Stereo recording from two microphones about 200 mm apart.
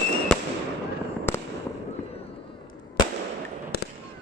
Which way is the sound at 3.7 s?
50° left (ahead or behind).